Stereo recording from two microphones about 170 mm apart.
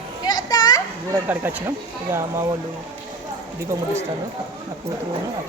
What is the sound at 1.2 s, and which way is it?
Speech, 10° right (ahead or behind).